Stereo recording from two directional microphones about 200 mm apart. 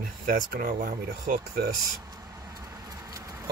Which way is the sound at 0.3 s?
45° right (ahead or behind).